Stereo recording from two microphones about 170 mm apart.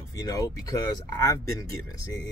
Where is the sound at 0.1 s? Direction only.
20° left (ahead or behind).